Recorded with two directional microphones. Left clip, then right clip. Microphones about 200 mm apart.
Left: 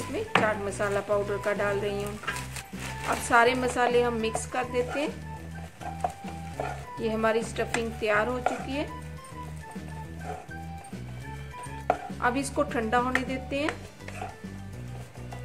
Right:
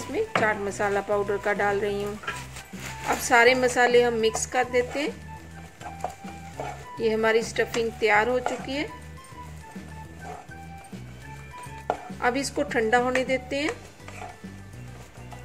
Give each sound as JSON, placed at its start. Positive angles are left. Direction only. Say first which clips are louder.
{"t": 0.1, "sound": "speech", "louder": "right 2 dB", "side_deg": -15}
{"t": 3.3, "sound": "speech", "louder": "right 4 dB", "side_deg": -10}
{"t": 7.0, "sound": "speech", "louder": "right 4 dB", "side_deg": -10}
{"t": 11.9, "sound": "music", "louder": "right 1 dB", "side_deg": -5}
{"t": 12.5, "sound": "a woman's voice", "louder": "right 3 dB", "side_deg": -5}